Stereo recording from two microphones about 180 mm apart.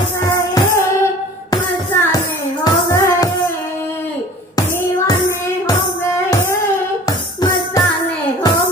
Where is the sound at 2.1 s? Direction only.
20° left (ahead or behind).